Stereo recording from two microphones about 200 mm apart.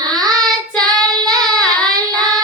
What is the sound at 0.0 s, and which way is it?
Child singing, 20° right (ahead or behind).